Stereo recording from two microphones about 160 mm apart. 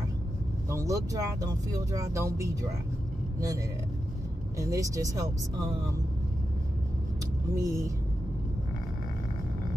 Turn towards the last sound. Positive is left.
turn(degrees=-20)  # may be behind; listen again after turning